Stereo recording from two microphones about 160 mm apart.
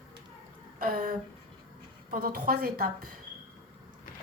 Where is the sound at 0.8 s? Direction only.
60° right (ahead or behind).